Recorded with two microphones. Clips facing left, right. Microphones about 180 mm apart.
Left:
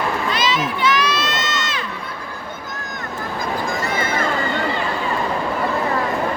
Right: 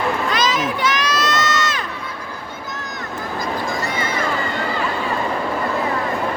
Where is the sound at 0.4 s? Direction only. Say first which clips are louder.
Even; 45° right (ahead or behind).